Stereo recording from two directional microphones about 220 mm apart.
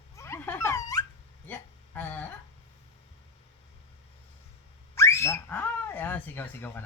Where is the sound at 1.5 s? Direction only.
10° left (ahead or behind).